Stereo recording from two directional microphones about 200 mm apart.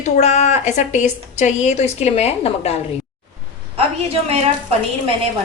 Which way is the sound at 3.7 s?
30° right (ahead or behind).